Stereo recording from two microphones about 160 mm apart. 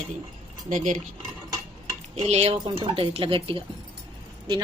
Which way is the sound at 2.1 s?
40° right (ahead or behind).